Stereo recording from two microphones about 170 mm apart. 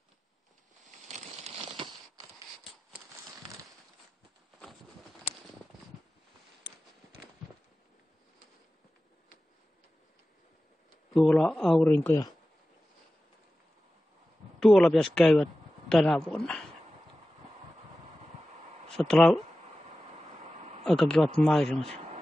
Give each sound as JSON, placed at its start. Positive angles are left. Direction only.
{"t": 1.0, "sound": "crumpling", "side_deg": -40}
{"t": 11.1, "sound": "speech", "side_deg": 5}
{"t": 14.6, "sound": "speech", "side_deg": 5}
{"t": 18.9, "sound": "speech", "side_deg": 5}
{"t": 20.8, "sound": "speech", "side_deg": 5}